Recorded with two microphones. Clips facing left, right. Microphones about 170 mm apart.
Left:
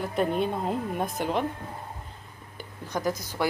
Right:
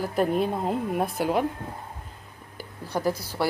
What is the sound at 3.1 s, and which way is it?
Speech, 35° right (ahead or behind).